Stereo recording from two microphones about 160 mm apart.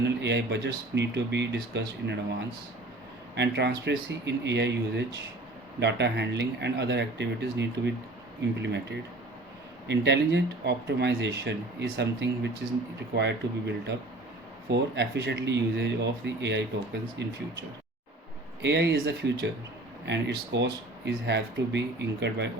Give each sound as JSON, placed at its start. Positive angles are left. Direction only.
{"t": 0.0, "sound": "speech", "side_deg": -90}
{"t": 3.3, "sound": "speech", "side_deg": -90}
{"t": 18.6, "sound": "speech", "side_deg": -90}